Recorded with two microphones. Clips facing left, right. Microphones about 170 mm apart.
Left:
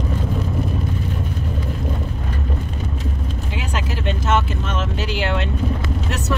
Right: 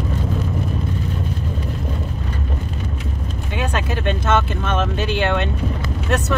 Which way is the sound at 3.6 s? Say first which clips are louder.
Right 5 dB; 60° right (ahead or behind).